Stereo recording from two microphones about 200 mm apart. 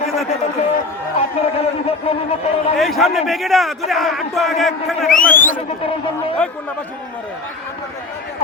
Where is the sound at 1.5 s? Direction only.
30° left (ahead or behind).